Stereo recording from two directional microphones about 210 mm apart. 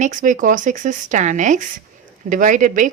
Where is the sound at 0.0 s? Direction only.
35° right (ahead or behind).